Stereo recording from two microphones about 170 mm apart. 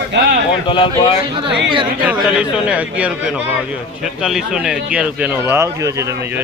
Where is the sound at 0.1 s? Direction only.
90° right.